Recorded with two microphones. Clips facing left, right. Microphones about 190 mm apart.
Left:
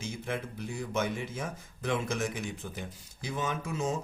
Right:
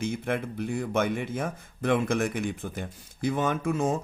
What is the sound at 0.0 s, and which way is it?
Speech, 60° right (ahead or behind).